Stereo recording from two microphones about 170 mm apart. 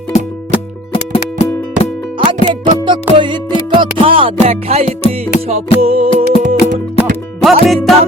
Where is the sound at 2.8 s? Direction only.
30° right (ahead or behind).